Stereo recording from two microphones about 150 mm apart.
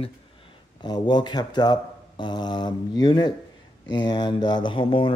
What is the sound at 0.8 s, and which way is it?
Speech, 30° left (ahead or behind).